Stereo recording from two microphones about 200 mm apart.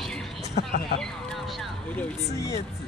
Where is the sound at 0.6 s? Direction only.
50° left (ahead or behind).